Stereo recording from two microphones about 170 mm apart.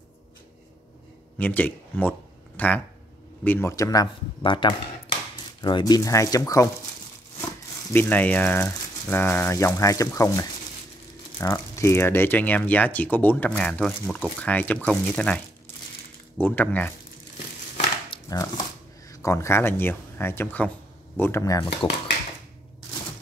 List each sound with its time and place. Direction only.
1.4 s speech: 10° left (ahead or behind)
7.9 s speech: 10° left (ahead or behind)
18.1 s a sound: 20° left (ahead or behind)
19.0 s speech: 20° left (ahead or behind)